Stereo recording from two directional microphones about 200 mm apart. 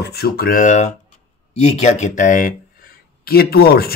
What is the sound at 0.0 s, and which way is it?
Speech, 55° left (ahead or behind).